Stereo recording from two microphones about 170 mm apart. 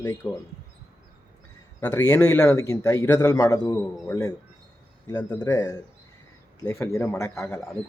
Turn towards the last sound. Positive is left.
turn(degrees=15)  # may be behind; listen again after turning